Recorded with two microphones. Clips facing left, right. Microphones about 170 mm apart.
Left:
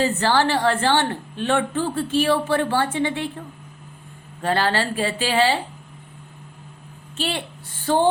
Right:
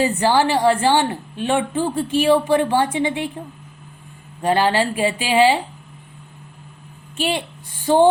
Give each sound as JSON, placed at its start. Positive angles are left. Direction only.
{"t": 0.0, "sound": "a woman's voice", "side_deg": -15}
{"t": 4.4, "sound": "a woman's voice", "side_deg": -15}
{"t": 7.2, "sound": "a woman's voice", "side_deg": -15}